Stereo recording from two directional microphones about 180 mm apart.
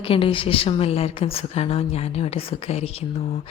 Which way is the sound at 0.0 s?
30° left (ahead or behind).